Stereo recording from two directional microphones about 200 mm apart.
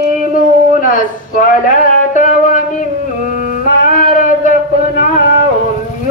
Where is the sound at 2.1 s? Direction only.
40° left (ahead or behind).